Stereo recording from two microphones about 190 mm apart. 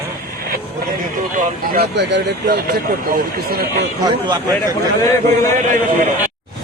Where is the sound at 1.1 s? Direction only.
45° right (ahead or behind).